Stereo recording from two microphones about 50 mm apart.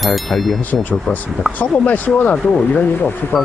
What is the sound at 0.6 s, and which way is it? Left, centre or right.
Speech, left.